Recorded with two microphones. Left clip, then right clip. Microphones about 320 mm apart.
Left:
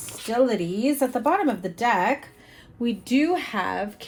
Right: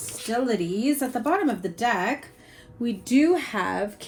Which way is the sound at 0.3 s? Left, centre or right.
Left.